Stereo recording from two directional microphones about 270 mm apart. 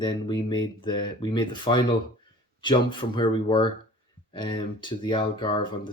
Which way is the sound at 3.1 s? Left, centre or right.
Centre.